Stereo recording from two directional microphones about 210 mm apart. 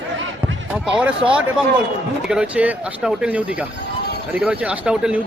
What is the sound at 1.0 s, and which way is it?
A man's voice, 5° right (ahead or behind).